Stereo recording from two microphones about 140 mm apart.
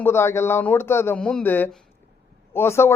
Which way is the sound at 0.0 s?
15° left (ahead or behind).